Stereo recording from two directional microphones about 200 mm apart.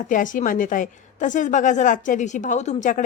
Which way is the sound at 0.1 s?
40° left (ahead or behind).